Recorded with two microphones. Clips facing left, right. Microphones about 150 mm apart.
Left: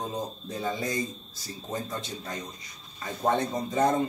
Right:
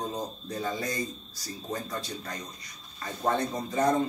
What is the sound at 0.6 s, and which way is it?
Speech, 25° left (ahead or behind).